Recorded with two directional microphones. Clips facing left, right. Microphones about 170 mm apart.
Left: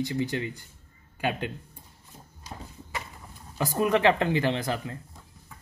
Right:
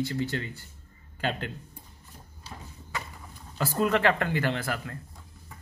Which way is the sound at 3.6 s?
15° left (ahead or behind).